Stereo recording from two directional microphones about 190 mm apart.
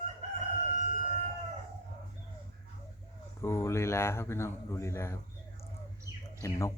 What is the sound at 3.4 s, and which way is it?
Speech, 15° left (ahead or behind).